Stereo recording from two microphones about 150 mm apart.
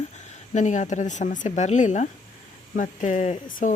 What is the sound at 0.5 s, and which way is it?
A woman's voice, 55° left (ahead or behind).